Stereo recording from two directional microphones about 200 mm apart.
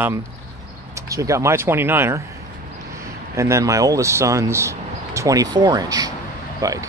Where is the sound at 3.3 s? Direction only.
15° right (ahead or behind).